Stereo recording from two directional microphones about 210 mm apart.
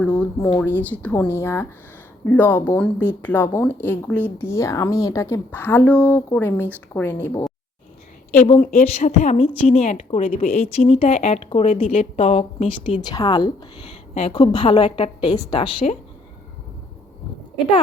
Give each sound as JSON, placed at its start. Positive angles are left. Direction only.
{"t": 0.0, "sound": "speech", "side_deg": 5}
{"t": 8.4, "sound": "a woman's voice", "side_deg": 30}